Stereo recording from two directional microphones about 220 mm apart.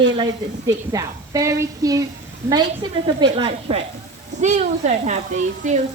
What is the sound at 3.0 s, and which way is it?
Speech, 20° right (ahead or behind).